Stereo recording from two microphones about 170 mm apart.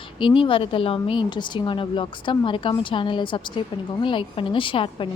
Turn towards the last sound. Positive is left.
turn(degrees=30)  # may be behind; listen again after turning